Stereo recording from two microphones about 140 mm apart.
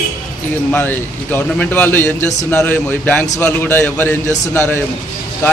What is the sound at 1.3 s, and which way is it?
A man's voice, 15° left (ahead or behind).